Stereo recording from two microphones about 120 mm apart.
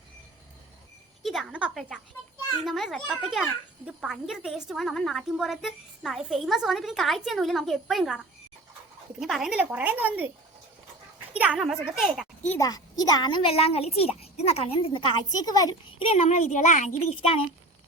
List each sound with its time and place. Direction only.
1.2 s a sound: centre (ahead or behind)
2.6 s a woman's voice: centre (ahead or behind)
9.6 s speech: 15° right (ahead or behind)
11.3 s a woman's voice: 10° right (ahead or behind)
12.5 s a woman's voice: 30° left (ahead or behind)
13.5 s a child's voice: 55° left (ahead or behind)
15.4 s a woman's voice: 30° left (ahead or behind)
16.0 s speech: 55° left (ahead or behind)